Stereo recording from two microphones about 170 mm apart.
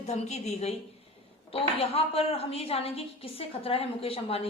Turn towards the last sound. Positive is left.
turn(degrees=35)  # may be behind; listen again after turning